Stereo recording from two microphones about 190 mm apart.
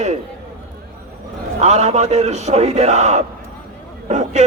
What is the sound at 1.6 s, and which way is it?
Speech, 35° right (ahead or behind).